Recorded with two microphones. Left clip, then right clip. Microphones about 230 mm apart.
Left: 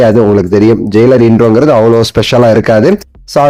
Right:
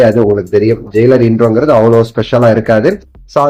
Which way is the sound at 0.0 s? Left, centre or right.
Left.